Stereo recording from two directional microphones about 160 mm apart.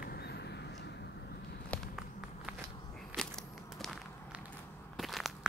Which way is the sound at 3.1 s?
10° right (ahead or behind).